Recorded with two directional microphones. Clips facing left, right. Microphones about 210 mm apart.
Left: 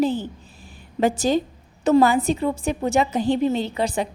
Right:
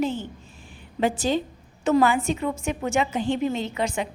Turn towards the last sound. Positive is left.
turn(degrees=35)  # may be behind; listen again after turning